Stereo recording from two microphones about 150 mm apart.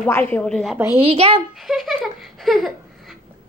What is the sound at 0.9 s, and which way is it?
Speech, 40° right (ahead or behind).